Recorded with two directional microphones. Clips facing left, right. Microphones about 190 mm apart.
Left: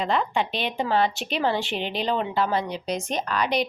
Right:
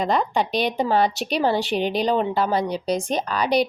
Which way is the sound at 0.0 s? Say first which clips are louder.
Right 3 dB; 40° right (ahead or behind).